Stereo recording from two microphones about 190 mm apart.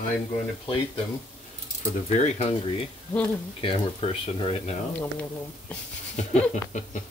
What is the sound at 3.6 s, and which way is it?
Speech, 30° left (ahead or behind).